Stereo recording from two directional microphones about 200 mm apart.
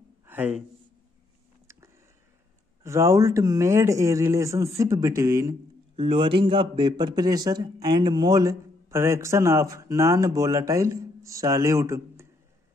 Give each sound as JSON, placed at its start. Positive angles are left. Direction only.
{"t": 0.2, "sound": "a sound", "side_deg": -10}
{"t": 2.8, "sound": "a man's voice", "side_deg": -15}
{"t": 5.9, "sound": "a man's voice", "side_deg": -25}